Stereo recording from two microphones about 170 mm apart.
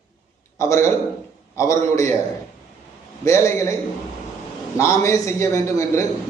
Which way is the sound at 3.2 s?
15° left (ahead or behind).